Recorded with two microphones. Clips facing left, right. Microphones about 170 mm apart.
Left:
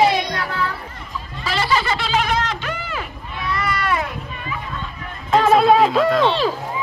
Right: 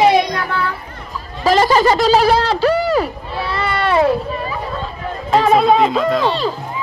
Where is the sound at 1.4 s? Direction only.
40° right (ahead or behind).